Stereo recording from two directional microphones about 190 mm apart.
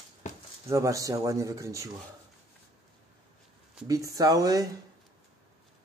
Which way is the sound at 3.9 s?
15° right (ahead or behind).